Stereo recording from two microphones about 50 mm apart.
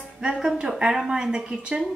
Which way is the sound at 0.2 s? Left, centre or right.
Centre.